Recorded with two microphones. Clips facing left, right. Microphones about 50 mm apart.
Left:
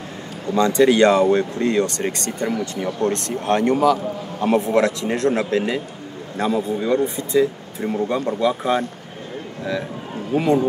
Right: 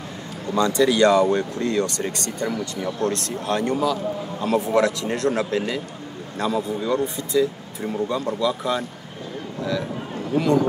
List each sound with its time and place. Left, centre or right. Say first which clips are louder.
0.6 s speech: left 3 dB; left
3.8 s a man's voice: left 5 dB; left
4.5 s speech: left 2 dB; left